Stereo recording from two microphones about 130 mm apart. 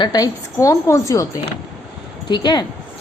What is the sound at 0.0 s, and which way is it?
A woman's voice, 30° left (ahead or behind).